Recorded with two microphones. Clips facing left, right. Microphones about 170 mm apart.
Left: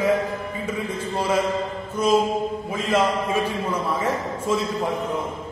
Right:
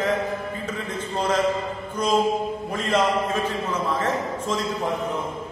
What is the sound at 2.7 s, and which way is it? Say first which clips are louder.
A man's voice: even; 5° left (ahead or behind).